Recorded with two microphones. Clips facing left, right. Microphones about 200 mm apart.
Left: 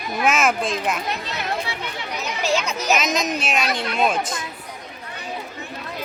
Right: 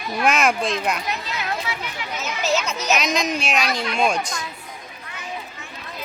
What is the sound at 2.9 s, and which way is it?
Speech, centre (ahead or behind).